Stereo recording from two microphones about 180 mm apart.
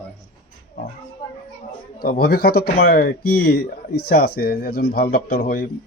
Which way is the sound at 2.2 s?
60° left (ahead or behind).